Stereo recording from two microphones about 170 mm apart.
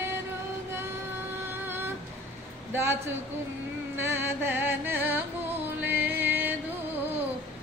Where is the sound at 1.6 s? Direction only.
15° right (ahead or behind).